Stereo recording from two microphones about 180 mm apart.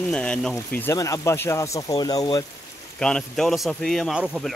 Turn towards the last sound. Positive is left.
turn(degrees=0)  # may be behind; listen again after turning